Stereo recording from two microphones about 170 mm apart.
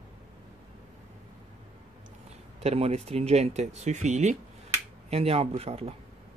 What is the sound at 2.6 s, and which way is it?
Speech, 35° right (ahead or behind).